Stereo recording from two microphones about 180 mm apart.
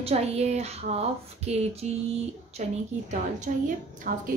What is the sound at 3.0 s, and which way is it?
A woman's voice, 45° right (ahead or behind).